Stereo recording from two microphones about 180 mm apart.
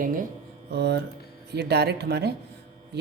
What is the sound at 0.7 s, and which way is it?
Speech, 65° right (ahead or behind).